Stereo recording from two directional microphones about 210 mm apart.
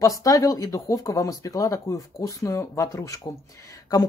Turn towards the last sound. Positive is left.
turn(degrees=15)  # may be behind; listen again after turning